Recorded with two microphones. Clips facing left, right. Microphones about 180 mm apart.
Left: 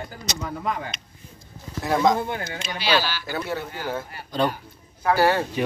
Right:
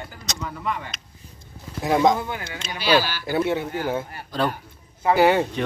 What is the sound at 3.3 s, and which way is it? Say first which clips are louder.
Speech: right 8 dB; 25° right (ahead or behind).